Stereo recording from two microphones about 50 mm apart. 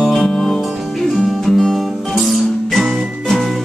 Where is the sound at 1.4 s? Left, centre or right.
Centre.